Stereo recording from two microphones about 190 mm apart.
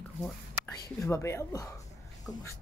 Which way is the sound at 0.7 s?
15° left (ahead or behind).